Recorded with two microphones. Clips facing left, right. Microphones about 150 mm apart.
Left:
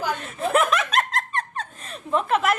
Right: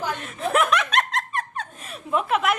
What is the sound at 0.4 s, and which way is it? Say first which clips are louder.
Snicker: left 1 dB; centre (ahead or behind).